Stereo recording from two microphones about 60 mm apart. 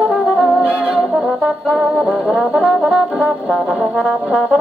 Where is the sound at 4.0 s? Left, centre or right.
Right.